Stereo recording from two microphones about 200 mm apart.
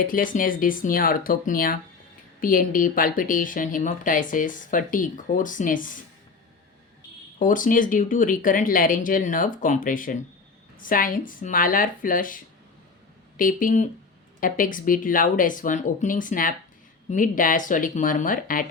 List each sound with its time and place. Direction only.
0.0 s speech: 45° left (ahead or behind)
7.3 s speech: 40° left (ahead or behind)